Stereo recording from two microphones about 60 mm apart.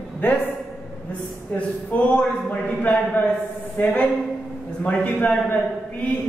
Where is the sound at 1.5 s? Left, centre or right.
Left.